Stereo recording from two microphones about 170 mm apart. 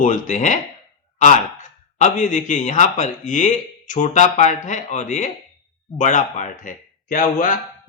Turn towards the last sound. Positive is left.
turn(degrees=55)  # may be behind; listen again after turning